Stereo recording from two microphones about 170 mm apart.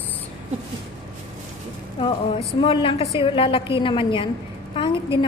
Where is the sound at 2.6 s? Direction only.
30° left (ahead or behind).